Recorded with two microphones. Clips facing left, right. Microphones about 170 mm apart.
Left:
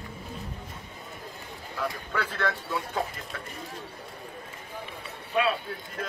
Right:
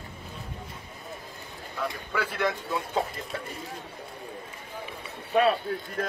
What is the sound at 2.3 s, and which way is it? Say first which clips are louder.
Speech: right 3 dB; 15° right (ahead or behind).